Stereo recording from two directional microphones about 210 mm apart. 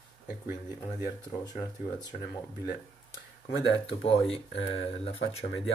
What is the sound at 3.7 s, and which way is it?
Speech, 25° left (ahead or behind).